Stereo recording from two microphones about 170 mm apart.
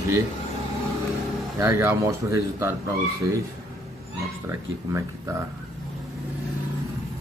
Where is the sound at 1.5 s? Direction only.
15° right (ahead or behind).